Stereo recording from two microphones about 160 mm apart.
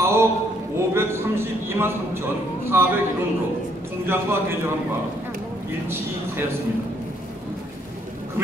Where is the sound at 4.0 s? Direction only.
15° right (ahead or behind).